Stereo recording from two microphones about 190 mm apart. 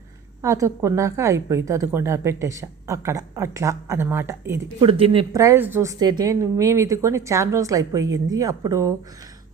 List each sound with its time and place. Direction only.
0.4 s a woman's voice: 15° right (ahead or behind)
4.8 s speech: 30° right (ahead or behind)
5.3 s a woman's voice: 15° right (ahead or behind)